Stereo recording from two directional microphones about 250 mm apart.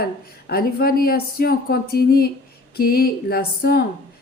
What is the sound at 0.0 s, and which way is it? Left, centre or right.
Speech, left.